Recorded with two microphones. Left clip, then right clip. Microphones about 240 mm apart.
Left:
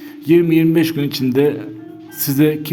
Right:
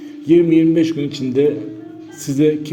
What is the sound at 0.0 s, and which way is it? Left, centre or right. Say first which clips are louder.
A man's voice: right 1 dB; left.